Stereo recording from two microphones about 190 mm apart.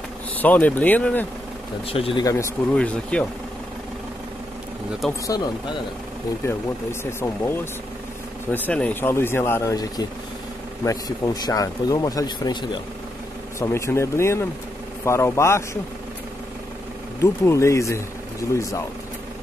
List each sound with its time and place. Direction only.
0.4 s speech: 10° left (ahead or behind)
1.9 s speech: 30° left (ahead or behind)
2.2 s speech: 15° left (ahead or behind)
5.2 s speech: 20° left (ahead or behind)
8.5 s speech: 10° left (ahead or behind)
13.6 s speech: 15° left (ahead or behind)
17.2 s speech: 15° left (ahead or behind)